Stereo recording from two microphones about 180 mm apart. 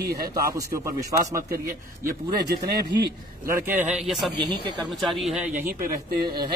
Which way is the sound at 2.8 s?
65° right (ahead or behind).